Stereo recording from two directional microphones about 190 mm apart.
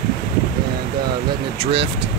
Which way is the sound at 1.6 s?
30° right (ahead or behind).